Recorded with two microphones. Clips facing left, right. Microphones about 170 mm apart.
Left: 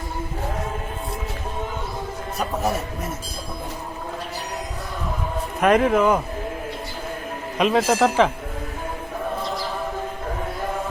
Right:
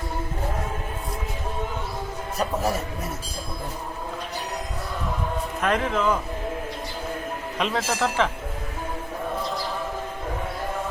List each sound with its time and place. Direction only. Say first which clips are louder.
5.6 s a man's voice: left 7 dB; 60° left (ahead or behind)
7.6 s speech: left 7 dB; 15° left (ahead or behind)